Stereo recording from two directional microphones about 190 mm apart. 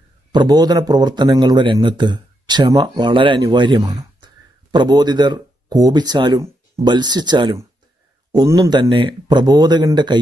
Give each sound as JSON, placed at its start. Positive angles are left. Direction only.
{"t": 0.3, "sound": "a man's voice", "side_deg": -20}